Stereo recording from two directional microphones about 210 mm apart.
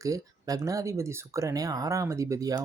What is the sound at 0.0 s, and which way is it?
Speech, 15° right (ahead or behind).